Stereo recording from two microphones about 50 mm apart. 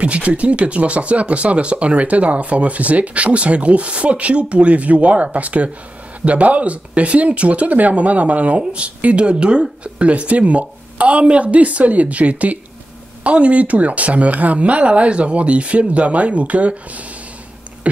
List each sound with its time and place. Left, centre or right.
0.0 s speech: right